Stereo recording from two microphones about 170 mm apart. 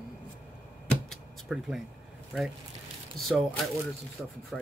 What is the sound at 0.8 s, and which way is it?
Typewriter, centre (ahead or behind).